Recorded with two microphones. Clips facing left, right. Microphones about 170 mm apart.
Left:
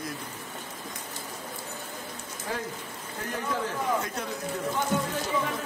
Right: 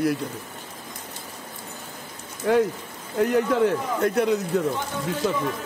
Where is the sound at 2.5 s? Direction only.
75° right (ahead or behind).